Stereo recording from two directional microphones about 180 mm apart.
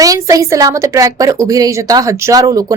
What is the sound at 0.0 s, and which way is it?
A woman's voice, 20° right (ahead or behind).